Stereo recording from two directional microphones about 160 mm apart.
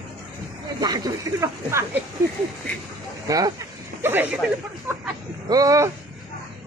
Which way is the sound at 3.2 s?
20° right (ahead or behind).